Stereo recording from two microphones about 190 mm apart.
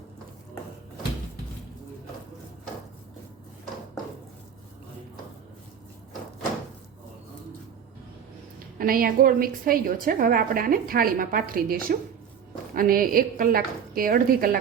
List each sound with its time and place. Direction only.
8.5 s a woman's voice: 50° right (ahead or behind)